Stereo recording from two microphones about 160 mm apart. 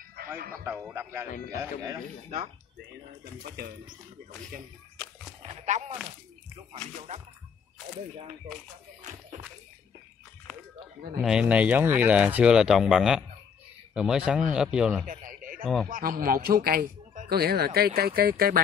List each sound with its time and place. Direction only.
0.4 s a man's voice: 60° right (ahead or behind)
0.8 s speech: 15° right (ahead or behind)
5.7 s speech: 45° right (ahead or behind)
11.2 s speech: 5° right (ahead or behind)
15.0 s a sound: 60° right (ahead or behind)
15.9 s a man's voice: 60° right (ahead or behind)
17.3 s speech: 75° right (ahead or behind)